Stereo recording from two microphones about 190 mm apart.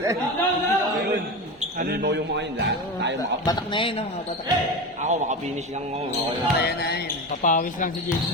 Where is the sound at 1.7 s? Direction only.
45° right (ahead or behind); by 3.2 s 65° right (ahead or behind).